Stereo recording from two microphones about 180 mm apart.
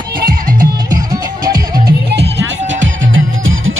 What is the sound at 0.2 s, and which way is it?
Music, 55° right (ahead or behind).